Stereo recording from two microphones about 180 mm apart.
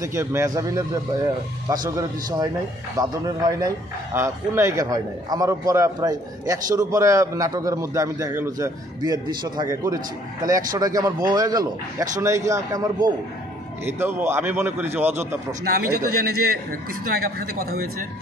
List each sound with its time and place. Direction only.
0.0 s a man's voice: 15° right (ahead or behind)
1.9 s a man's voice: 20° right (ahead or behind)
15.6 s a man's voice: 60° right (ahead or behind)